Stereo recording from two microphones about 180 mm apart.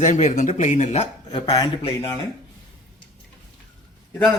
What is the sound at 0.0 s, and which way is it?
Speech, 40° left (ahead or behind).